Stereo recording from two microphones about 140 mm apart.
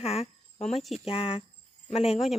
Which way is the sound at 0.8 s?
Centre (ahead or behind).